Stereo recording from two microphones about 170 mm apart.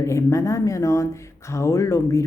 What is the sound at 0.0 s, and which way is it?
Speech, 15° left (ahead or behind).